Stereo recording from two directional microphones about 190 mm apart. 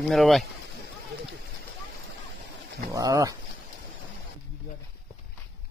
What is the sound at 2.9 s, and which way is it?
Speech, 15° right (ahead or behind).